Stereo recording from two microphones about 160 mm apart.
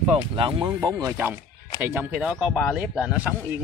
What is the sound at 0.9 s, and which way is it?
Speech, 15° right (ahead or behind).